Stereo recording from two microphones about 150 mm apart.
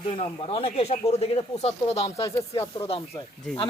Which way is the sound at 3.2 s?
30° left (ahead or behind).